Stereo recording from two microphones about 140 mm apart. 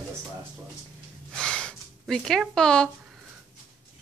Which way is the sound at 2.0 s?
5° left (ahead or behind).